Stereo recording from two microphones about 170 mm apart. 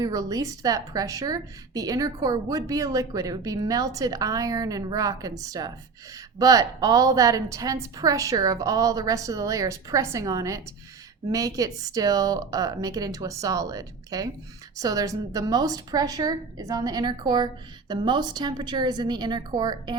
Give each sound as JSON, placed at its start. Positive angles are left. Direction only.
{"t": 0.0, "sound": "speech", "side_deg": -20}